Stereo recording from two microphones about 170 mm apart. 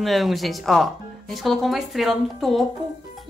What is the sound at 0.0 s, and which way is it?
Speech, centre (ahead or behind).